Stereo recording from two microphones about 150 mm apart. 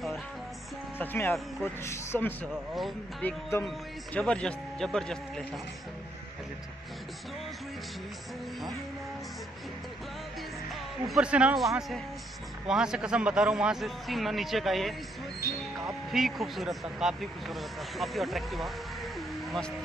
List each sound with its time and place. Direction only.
0.9 s a man's voice: 15° left (ahead or behind)
2.7 s speech: centre (ahead or behind)
3.3 s a man's voice: 15° left (ahead or behind)
11.1 s speech: 5° right (ahead or behind)
16.1 s speech: centre (ahead or behind)